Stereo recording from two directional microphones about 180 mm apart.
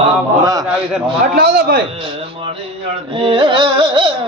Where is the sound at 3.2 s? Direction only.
30° right (ahead or behind).